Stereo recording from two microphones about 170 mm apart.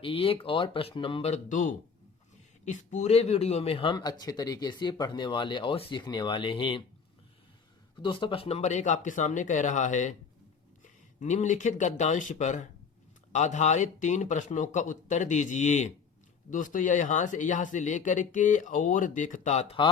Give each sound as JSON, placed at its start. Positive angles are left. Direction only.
{"t": 0.0, "sound": "speech", "side_deg": 30}
{"t": 7.9, "sound": "speech", "side_deg": 30}